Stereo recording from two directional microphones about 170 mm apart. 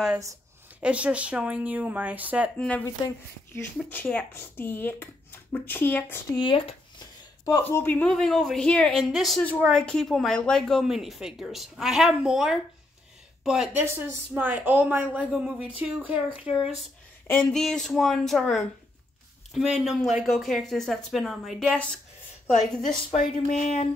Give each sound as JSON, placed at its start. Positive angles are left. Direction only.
{"t": 0.1, "sound": "a sound", "side_deg": -15}
{"t": 0.8, "sound": "speech", "side_deg": -5}
{"t": 2.5, "sound": "speech", "side_deg": 10}
{"t": 6.3, "sound": "speech", "side_deg": 30}
{"t": 7.4, "sound": "speech", "side_deg": 15}
{"t": 17.3, "sound": "speech", "side_deg": 10}
{"t": 23.6, "sound": "a sound", "side_deg": 45}